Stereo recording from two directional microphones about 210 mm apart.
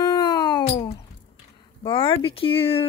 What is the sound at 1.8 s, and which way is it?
Speech, 25° left (ahead or behind).